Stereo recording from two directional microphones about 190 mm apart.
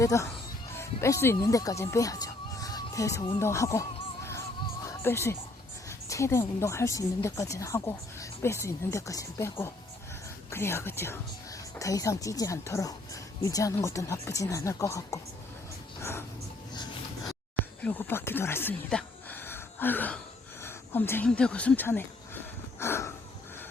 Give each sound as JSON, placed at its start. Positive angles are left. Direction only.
{"t": 0.0, "sound": "a woman's voice", "side_deg": 15}
{"t": 16.7, "sound": "a sound", "side_deg": 20}
{"t": 17.8, "sound": "a woman's voice", "side_deg": 10}